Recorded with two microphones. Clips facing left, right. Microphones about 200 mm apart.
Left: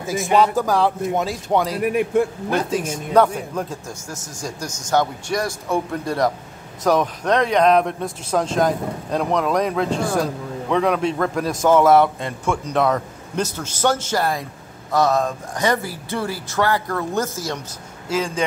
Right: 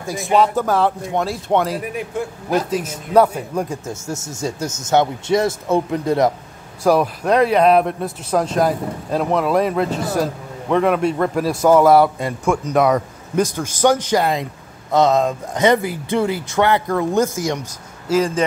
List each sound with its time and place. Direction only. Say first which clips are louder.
0.0 s speech: right 1 dB; centre (ahead or behind)
1.8 s a man's voice: left 7 dB; 60° left (ahead or behind)
3.1 s a man's voice: right 2 dB; 10° right (ahead or behind)
3.8 s speech: right 6 dB; 25° right (ahead or behind)
6.8 s a man's voice: right 3 dB; 10° right (ahead or behind)